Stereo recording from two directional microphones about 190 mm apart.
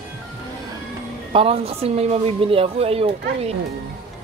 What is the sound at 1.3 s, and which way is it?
A woman's voice, 30° right (ahead or behind).